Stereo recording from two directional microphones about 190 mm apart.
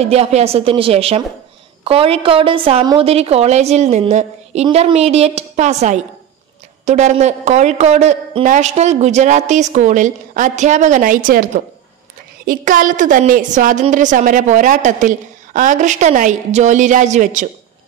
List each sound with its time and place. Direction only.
0.0 s a woman's voice: 35° right (ahead or behind)